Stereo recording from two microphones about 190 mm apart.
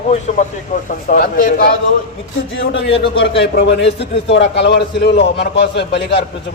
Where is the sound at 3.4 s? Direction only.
60° left (ahead or behind).